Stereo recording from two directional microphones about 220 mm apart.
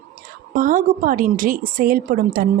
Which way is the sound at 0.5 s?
40° right (ahead or behind).